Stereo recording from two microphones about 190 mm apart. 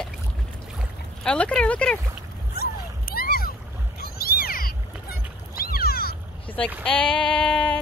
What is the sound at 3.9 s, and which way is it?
Cat, 55° left (ahead or behind).